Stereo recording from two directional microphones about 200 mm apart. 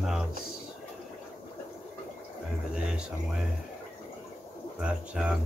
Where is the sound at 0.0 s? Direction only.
Centre (ahead or behind).